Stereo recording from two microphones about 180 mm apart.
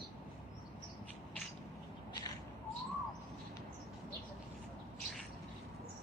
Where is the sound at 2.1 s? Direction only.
20° left (ahead or behind).